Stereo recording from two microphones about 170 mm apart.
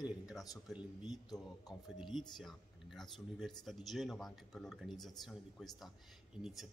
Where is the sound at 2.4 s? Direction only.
Centre (ahead or behind).